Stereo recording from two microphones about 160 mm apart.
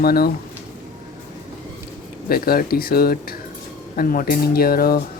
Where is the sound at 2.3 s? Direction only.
70° left (ahead or behind).